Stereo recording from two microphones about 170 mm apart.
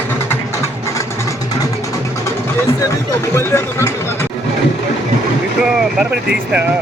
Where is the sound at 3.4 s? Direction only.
15° left (ahead or behind).